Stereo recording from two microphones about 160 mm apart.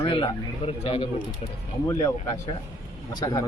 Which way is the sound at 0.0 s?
35° left (ahead or behind).